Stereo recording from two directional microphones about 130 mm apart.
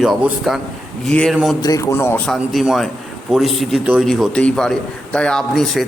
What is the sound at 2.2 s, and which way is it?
A man's voice, centre (ahead or behind).